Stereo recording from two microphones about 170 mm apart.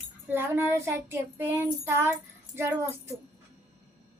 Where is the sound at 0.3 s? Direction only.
10° right (ahead or behind).